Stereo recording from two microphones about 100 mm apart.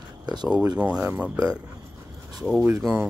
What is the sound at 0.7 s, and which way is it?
Speech, 15° right (ahead or behind).